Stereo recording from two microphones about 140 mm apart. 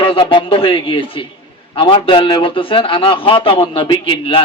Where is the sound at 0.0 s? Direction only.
40° left (ahead or behind).